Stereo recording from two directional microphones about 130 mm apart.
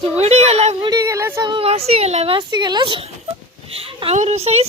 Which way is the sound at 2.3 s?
35° right (ahead or behind).